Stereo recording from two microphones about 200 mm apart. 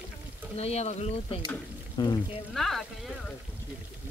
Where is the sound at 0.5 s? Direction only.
30° left (ahead or behind).